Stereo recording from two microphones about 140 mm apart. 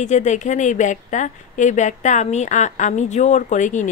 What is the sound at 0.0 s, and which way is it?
A woman's voice, 55° left (ahead or behind).